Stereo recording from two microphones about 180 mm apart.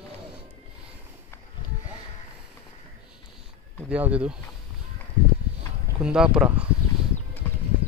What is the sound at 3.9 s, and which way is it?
Speech, 5° right (ahead or behind).